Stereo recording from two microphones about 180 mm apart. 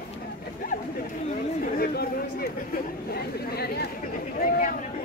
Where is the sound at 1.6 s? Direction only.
55° left (ahead or behind).